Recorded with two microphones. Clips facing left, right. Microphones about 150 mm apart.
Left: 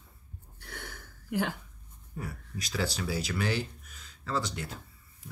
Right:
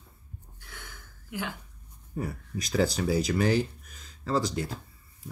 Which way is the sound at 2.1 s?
45° right (ahead or behind).